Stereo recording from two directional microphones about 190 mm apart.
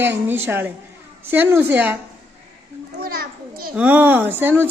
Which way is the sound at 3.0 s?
50° right (ahead or behind).